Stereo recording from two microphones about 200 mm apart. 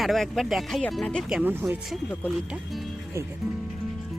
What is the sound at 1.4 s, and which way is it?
Speech, 10° right (ahead or behind).